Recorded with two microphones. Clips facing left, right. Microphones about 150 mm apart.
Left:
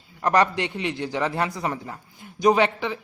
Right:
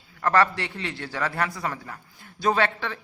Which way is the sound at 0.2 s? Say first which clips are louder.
Left 1 dB; 20° left (ahead or behind).